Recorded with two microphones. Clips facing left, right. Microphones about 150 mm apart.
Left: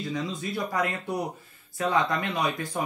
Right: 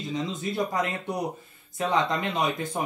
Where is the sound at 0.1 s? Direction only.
20° right (ahead or behind).